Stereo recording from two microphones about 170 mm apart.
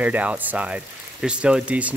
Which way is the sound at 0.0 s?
10° right (ahead or behind).